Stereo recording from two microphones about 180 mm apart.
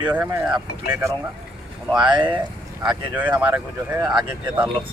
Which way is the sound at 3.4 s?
10° right (ahead or behind).